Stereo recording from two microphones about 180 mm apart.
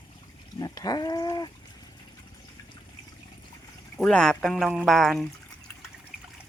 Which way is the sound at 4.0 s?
5° left (ahead or behind).